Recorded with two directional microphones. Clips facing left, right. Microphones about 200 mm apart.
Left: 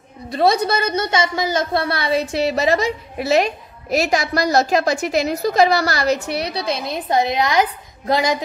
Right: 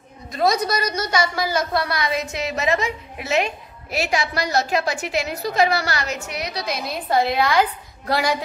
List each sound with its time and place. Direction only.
0.3 s a woman's voice: 30° left (ahead or behind)